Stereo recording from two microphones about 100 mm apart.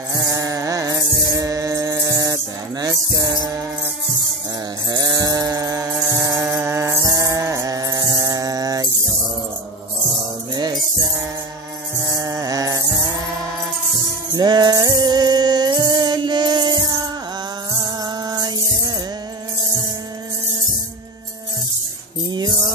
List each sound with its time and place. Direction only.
0.1 s music: 35° right (ahead or behind)
4.8 s chainsaw: 40° right (ahead or behind)
5.9 s music: 25° right (ahead or behind)
8.2 s mantra: 35° right (ahead or behind)
10.5 s music: 40° right (ahead or behind)
14.3 s music: 45° right (ahead or behind)
22.3 s music: 45° right (ahead or behind)